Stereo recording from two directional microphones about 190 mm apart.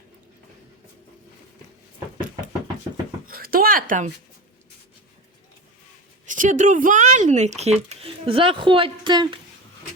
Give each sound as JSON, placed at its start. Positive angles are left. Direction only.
{"t": 3.2, "sound": "speech", "side_deg": -50}
{"t": 6.2, "sound": "speech", "side_deg": -40}